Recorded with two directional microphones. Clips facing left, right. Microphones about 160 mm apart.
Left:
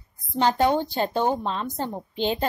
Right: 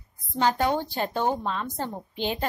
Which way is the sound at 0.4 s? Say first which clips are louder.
Left 3 dB; 25° left (ahead or behind).